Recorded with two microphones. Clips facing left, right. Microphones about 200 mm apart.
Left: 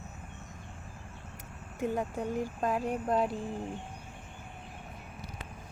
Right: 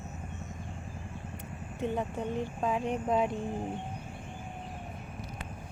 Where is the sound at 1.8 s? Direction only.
5° left (ahead or behind).